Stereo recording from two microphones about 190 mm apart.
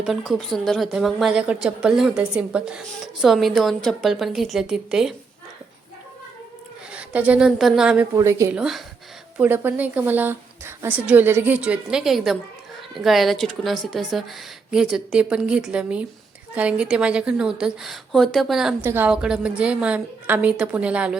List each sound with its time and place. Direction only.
0.0 s a woman's voice: centre (ahead or behind)
6.9 s speech: 5° right (ahead or behind)
8.1 s a woman's voice: 15° right (ahead or behind)
8.5 s a woman's voice: centre (ahead or behind)